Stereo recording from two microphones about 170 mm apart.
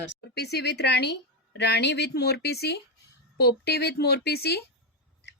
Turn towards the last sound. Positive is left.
turn(degrees=70)  # may be behind; listen again after turning